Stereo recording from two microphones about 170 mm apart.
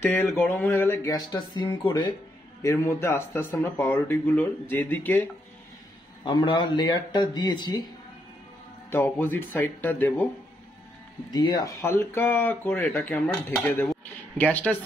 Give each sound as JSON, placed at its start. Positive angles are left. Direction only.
{"t": 0.0, "sound": "speech", "side_deg": 10}
{"t": 2.6, "sound": "speech", "side_deg": 15}
{"t": 6.2, "sound": "speech", "side_deg": 25}
{"t": 8.9, "sound": "speech", "side_deg": 15}
{"t": 11.3, "sound": "speech", "side_deg": 15}